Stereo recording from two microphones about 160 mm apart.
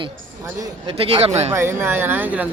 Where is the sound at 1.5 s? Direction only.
15° right (ahead or behind).